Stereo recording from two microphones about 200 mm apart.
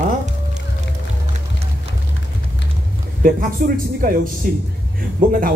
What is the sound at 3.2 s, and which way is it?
Speech, 45° right (ahead or behind).